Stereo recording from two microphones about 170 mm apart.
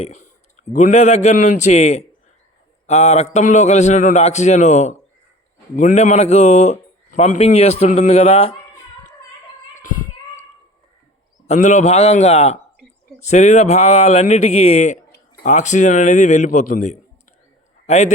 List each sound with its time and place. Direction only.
0.0 s a man's voice: 40° left (ahead or behind)
9.7 s child singing: 50° left (ahead or behind)
11.4 s a man's voice: 40° left (ahead or behind)